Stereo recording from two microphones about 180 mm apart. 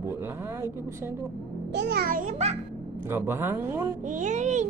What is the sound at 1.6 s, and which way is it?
Speech, 70° right (ahead or behind).